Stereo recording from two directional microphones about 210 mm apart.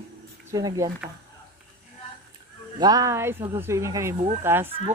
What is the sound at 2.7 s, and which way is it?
Speech, 20° right (ahead or behind).